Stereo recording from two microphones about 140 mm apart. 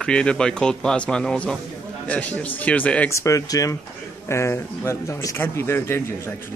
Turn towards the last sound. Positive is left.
turn(degrees=20)  # may be behind; listen again after turning